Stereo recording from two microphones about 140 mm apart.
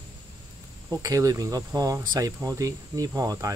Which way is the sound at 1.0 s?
25° right (ahead or behind).